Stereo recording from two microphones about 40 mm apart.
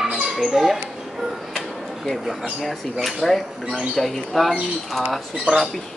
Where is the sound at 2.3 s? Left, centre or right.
Centre.